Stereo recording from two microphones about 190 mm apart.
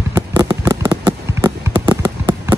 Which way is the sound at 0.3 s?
20° right (ahead or behind).